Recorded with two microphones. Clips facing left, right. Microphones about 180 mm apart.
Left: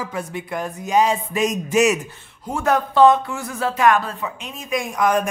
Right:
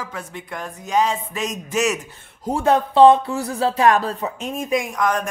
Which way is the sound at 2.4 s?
30° right (ahead or behind).